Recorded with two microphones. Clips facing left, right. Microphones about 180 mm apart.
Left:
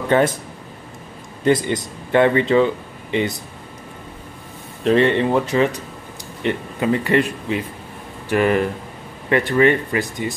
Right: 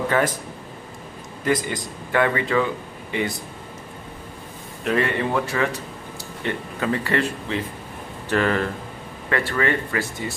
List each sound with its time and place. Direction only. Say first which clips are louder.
0.1 s speech: left 6 dB; 25° left (ahead or behind)
1.4 s speech: left 6 dB; 25° left (ahead or behind)
4.8 s speech: left 7 dB; 25° left (ahead or behind)